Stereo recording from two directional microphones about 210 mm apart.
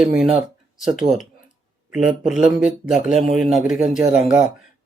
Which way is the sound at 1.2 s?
40° left (ahead or behind).